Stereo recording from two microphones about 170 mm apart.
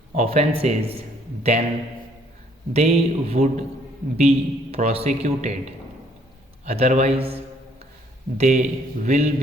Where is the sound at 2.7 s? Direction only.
40° right (ahead or behind).